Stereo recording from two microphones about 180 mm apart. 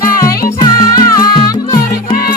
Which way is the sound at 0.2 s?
20° left (ahead or behind).